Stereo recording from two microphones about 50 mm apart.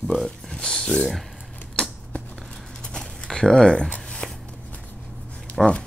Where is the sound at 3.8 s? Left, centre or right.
Left.